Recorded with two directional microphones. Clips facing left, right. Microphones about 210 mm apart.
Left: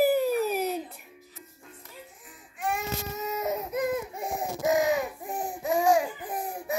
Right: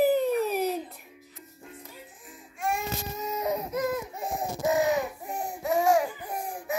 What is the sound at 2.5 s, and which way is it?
Baby cry, centre (ahead or behind).